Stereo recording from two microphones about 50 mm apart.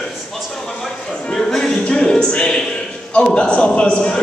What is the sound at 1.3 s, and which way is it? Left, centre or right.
Music, centre.